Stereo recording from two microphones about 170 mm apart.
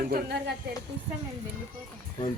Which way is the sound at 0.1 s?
70° right (ahead or behind).